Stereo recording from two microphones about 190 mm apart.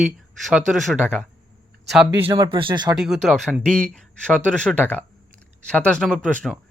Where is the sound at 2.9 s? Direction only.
Centre (ahead or behind).